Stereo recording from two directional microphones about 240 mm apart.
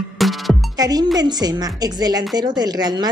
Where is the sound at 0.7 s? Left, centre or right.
Centre.